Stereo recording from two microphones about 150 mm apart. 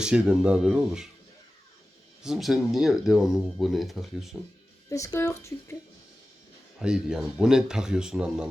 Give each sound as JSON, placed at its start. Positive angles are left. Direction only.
{"t": 0.0, "sound": "speech", "side_deg": -5}
{"t": 2.2, "sound": "speech", "side_deg": 0}
{"t": 4.9, "sound": "speech", "side_deg": 20}
{"t": 6.7, "sound": "speech", "side_deg": -5}